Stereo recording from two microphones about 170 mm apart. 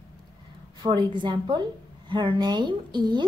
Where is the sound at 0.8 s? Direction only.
25° right (ahead or behind).